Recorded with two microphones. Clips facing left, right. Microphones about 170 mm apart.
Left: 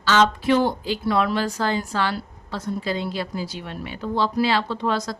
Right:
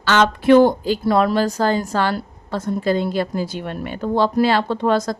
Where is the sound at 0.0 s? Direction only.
60° right (ahead or behind).